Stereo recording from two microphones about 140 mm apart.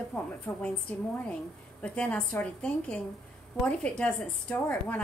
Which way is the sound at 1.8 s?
10° left (ahead or behind).